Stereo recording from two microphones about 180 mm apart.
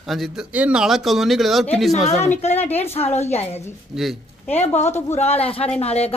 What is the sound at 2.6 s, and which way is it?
Speech, 35° left (ahead or behind).